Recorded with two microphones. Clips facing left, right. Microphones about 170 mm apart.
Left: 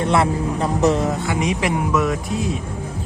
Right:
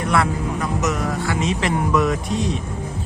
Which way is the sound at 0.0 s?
25° left (ahead or behind).